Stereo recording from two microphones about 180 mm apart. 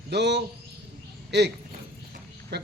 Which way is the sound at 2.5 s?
70° right (ahead or behind).